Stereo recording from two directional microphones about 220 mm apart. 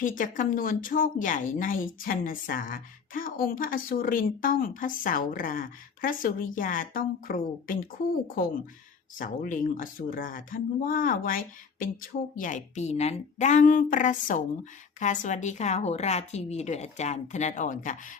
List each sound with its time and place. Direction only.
0.0 s speech: 35° left (ahead or behind)